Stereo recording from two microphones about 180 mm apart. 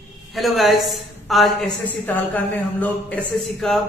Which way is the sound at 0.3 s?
Centre (ahead or behind).